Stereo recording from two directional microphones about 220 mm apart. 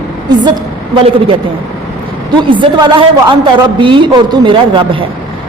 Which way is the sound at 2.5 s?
20° right (ahead or behind).